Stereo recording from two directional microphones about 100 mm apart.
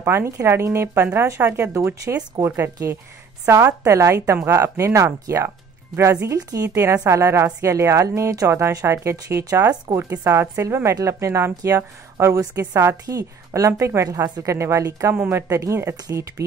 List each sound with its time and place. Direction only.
0.0 s a woman's voice: 25° right (ahead or behind)
6.7 s a woman's voice: 25° right (ahead or behind)
9.9 s a woman's voice: 20° right (ahead or behind)